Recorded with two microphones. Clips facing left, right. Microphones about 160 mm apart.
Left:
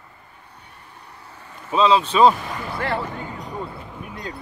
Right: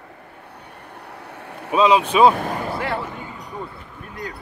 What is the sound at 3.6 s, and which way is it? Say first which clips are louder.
Basketball bounce: left 2 dB; 20° left (ahead or behind).